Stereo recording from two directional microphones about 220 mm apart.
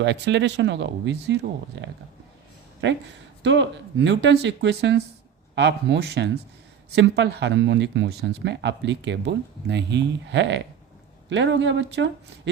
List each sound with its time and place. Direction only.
0.0 s speech: 55° right (ahead or behind)